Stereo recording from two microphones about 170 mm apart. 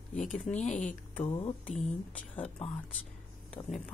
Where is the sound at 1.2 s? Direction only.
30° left (ahead or behind).